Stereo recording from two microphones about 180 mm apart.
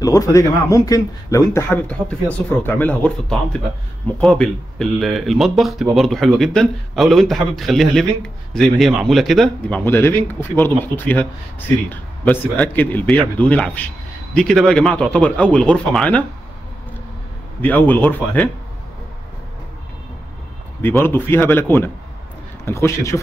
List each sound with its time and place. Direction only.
0.0 s speech: 20° left (ahead or behind); by 9.8 s centre (ahead or behind)
9.8 s speech: 10° left (ahead or behind)
17.6 s speech: 10° left (ahead or behind)
20.8 s speech: 10° left (ahead or behind)